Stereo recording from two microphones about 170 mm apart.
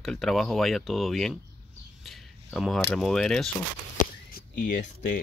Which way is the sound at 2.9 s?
Centre (ahead or behind).